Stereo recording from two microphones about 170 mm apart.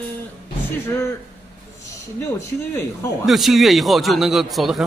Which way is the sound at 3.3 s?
Centre (ahead or behind).